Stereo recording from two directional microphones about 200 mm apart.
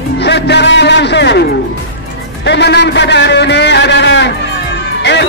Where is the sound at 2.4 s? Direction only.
60° left (ahead or behind).